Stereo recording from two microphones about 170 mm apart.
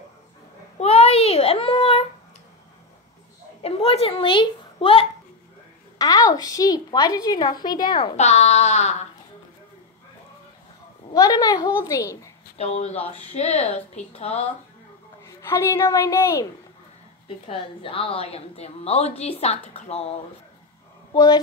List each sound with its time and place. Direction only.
0.7 s babbling: 35° left (ahead or behind)
3.6 s a child's voice: 35° left (ahead or behind)
5.9 s a woman's voice: 20° left (ahead or behind)
8.2 s a woman's voice: 40° left (ahead or behind)
11.1 s a woman's voice: 20° left (ahead or behind)
12.5 s a woman's voice: 40° left (ahead or behind)
15.2 s a woman's voice: 15° left (ahead or behind)
17.5 s a woman's voice: 30° left (ahead or behind)
21.1 s speech: 25° left (ahead or behind)